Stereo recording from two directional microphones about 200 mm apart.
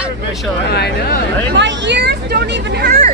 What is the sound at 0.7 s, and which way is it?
Speech, 55° left (ahead or behind).